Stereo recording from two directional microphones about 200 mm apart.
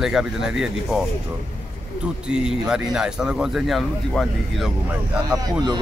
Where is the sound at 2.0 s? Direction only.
5° right (ahead or behind).